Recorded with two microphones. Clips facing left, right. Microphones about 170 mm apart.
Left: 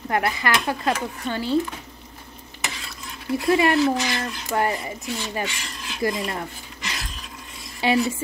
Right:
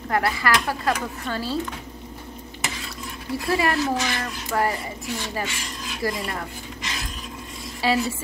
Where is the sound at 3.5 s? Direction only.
20° left (ahead or behind).